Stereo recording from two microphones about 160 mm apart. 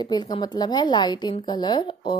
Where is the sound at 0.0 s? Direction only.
25° left (ahead or behind).